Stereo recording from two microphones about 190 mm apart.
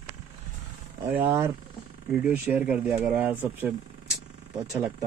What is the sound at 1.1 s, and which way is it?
Speech, 10° right (ahead or behind).